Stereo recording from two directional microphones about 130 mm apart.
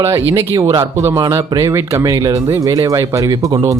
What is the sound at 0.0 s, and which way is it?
Speech, 20° right (ahead or behind).